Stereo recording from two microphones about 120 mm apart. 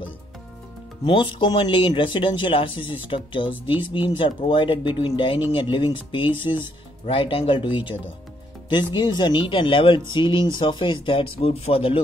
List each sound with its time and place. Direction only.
1.0 s speech: 45° left (ahead or behind)